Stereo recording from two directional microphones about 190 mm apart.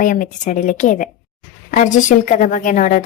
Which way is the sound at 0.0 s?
45° left (ahead or behind).